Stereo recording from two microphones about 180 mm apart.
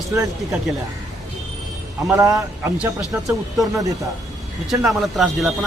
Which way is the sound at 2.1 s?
15° right (ahead or behind).